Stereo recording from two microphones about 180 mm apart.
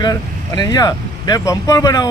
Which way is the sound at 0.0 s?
20° left (ahead or behind).